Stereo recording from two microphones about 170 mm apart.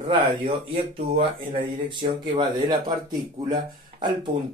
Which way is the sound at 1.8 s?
25° right (ahead or behind).